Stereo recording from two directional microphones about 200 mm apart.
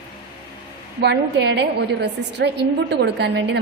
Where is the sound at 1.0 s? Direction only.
55° right (ahead or behind).